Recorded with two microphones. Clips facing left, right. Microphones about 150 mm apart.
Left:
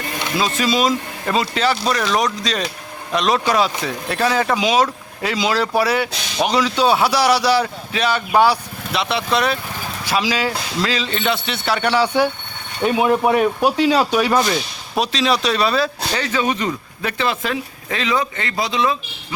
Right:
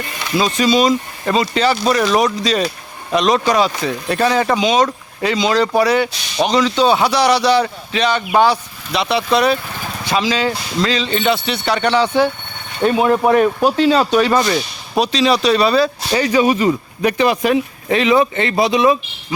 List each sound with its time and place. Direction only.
0.3 s speech: centre (ahead or behind)
16.1 s speech: 10° right (ahead or behind)